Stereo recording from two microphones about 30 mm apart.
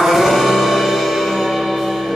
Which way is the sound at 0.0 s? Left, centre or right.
Centre.